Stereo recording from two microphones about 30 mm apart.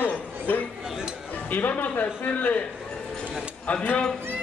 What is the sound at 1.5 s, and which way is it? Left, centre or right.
Speech, left.